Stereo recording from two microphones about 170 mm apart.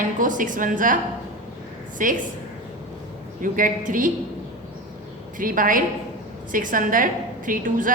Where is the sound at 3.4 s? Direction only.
50° right (ahead or behind).